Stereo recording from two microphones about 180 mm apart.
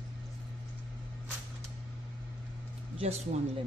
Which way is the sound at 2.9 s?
35° right (ahead or behind).